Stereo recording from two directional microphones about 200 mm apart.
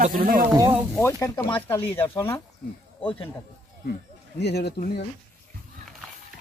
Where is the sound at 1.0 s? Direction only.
10° left (ahead or behind).